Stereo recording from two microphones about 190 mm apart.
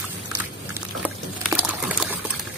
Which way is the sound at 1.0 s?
10° right (ahead or behind).